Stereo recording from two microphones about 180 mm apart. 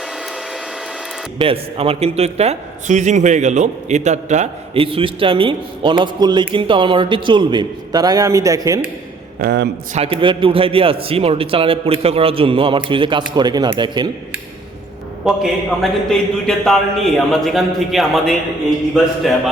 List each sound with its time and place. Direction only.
1.4 s a man's voice: 30° right (ahead or behind)
9.4 s a man's voice: 65° right (ahead or behind)
9.9 s a man's voice: 30° right (ahead or behind)
15.3 s a man's voice: centre (ahead or behind)